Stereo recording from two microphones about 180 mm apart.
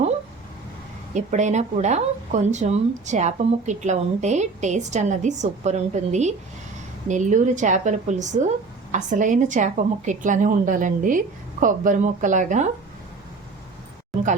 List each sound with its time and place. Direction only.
1.1 s speech: 40° right (ahead or behind)